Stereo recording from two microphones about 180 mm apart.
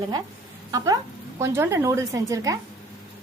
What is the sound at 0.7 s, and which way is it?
A woman's voice, 20° right (ahead or behind).